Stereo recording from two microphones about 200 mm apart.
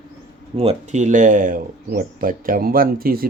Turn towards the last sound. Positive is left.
turn(degrees=-45)  # may be behind; listen again after turning